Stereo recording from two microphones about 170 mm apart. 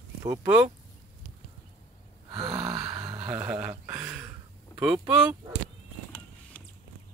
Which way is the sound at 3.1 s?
15° right (ahead or behind).